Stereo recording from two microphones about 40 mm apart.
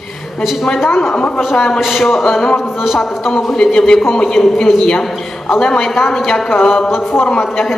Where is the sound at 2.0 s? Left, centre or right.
Centre.